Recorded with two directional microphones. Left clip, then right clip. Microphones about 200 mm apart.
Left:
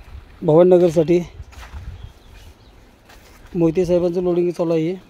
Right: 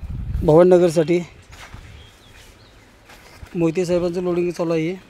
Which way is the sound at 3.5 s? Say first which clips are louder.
Left 3 dB; 20° left (ahead or behind).